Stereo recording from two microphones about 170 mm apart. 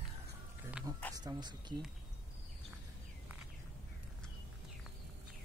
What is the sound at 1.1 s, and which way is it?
Speech, 25° right (ahead or behind).